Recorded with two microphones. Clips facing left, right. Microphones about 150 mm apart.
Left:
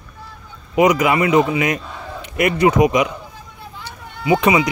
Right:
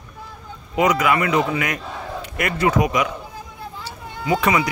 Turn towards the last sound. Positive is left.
turn(degrees=15)  # may be behind; listen again after turning